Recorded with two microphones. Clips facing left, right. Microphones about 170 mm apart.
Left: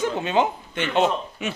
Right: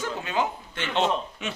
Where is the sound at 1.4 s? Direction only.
5° left (ahead or behind).